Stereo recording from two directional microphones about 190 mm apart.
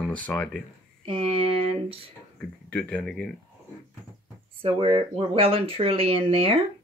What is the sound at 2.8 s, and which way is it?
Speech, 5° left (ahead or behind).